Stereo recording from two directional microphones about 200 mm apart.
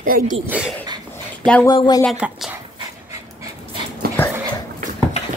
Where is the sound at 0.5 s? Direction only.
5° right (ahead or behind).